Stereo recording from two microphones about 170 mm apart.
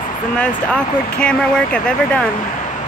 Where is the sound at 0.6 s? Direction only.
5° left (ahead or behind).